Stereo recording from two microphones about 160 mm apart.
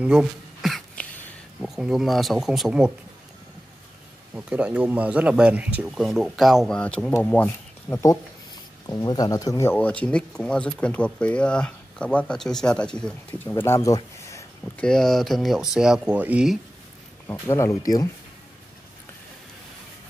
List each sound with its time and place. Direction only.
0.0 s a sound: 5° right (ahead or behind)
1.6 s speech: 5° right (ahead or behind)
4.4 s speech: 5° right (ahead or behind); by 14.4 s 20° left (ahead or behind)
14.8 s speech: 5° left (ahead or behind)
17.3 s speech: 15° left (ahead or behind)